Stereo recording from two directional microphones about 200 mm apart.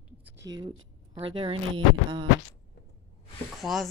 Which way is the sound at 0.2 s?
15° right (ahead or behind).